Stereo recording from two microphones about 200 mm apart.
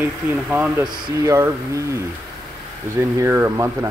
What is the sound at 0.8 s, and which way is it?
Speech, 20° right (ahead or behind).